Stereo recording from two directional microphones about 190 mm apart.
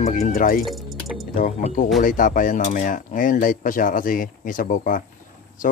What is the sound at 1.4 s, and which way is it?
A man's voice, 40° left (ahead or behind).